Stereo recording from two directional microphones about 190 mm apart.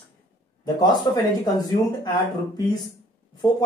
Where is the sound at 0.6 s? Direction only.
20° left (ahead or behind).